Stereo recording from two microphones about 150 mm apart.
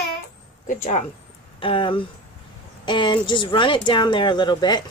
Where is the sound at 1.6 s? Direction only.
35° left (ahead or behind).